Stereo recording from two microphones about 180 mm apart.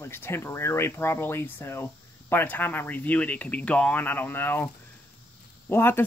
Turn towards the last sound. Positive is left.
turn(degrees=15)  # may be behind; listen again after turning